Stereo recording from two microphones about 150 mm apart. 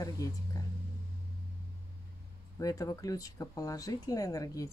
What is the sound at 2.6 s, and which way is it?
Speech, 20° left (ahead or behind).